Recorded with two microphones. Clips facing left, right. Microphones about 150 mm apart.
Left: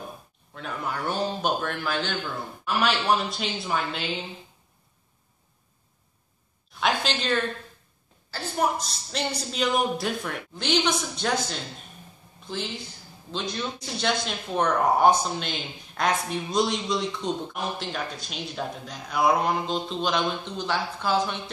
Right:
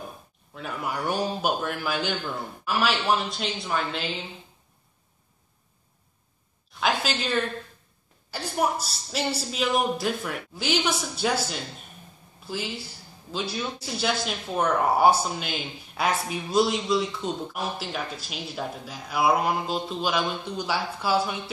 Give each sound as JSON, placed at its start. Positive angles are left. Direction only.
{"t": 0.6, "sound": "a man's voice", "side_deg": -10}
{"t": 6.8, "sound": "a man's voice", "side_deg": -5}